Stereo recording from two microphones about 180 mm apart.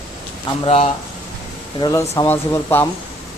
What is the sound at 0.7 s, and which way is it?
Speech, 35° left (ahead or behind).